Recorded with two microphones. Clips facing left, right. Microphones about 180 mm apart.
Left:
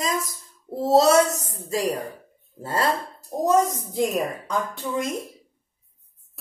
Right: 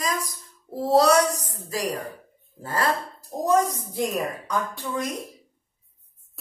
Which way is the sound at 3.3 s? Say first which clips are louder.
Left 3 dB; centre (ahead or behind).